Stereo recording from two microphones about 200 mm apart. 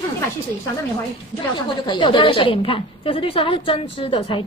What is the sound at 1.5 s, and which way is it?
A woman's voice, 25° left (ahead or behind).